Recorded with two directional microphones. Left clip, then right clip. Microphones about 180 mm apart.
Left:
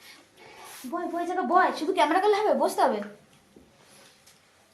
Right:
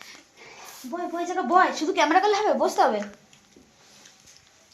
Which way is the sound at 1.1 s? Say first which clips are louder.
Right 2 dB; 15° right (ahead or behind).